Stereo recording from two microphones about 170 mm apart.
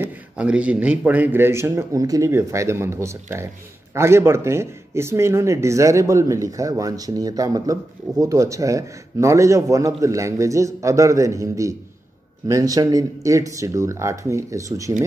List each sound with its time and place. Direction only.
0.0 s speech: 5° right (ahead or behind)